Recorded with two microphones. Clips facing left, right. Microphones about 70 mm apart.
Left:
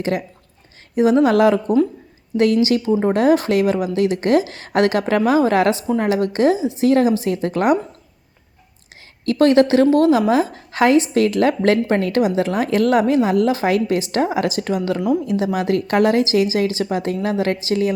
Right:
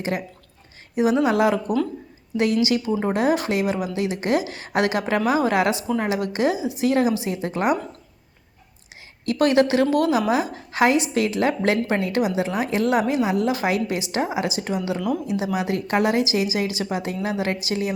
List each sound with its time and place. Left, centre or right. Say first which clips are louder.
0.9 s a woman's voice: left 5 dB; left
1.6 s speech: left 6 dB; left
2.3 s a woman's voice: left 5 dB; left
4.4 s speech: right 1 dB; right
4.7 s a woman's voice: left 5 dB; left
7.5 s speech: left 5 dB; left
9.2 s a woman's voice: left 5 dB; left